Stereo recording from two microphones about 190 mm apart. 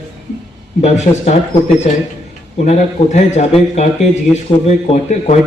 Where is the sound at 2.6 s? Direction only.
35° left (ahead or behind).